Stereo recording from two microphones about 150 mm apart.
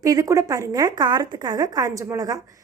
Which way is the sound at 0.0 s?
25° right (ahead or behind).